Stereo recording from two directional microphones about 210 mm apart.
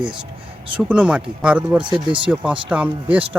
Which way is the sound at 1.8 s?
25° right (ahead or behind).